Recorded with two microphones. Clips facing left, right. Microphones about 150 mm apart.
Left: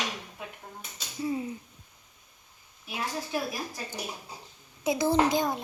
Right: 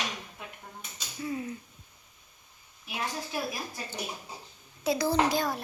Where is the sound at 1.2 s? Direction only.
25° left (ahead or behind).